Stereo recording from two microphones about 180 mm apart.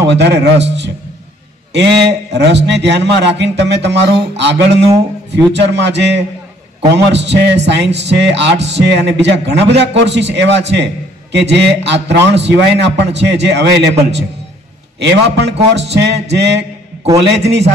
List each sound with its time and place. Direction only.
0.1 s a man's voice: 70° right (ahead or behind)
0.7 s a sound: 75° right (ahead or behind)
1.7 s a man's voice: 70° right (ahead or behind)